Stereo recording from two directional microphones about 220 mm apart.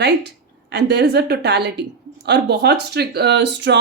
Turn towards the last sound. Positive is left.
turn(degrees=-50)  # may be behind; listen again after turning